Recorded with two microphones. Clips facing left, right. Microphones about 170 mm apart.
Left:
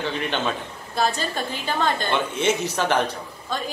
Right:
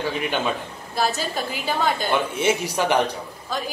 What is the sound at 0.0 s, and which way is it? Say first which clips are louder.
A woman's voice: right 1 dB; 10° right (ahead or behind).